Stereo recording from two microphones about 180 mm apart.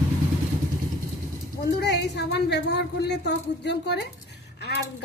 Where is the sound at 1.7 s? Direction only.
70° left (ahead or behind).